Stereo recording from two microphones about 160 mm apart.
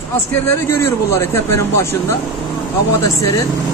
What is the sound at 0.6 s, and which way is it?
Speech, 15° left (ahead or behind).